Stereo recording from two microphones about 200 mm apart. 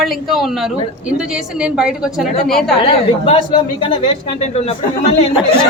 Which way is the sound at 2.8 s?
30° left (ahead or behind).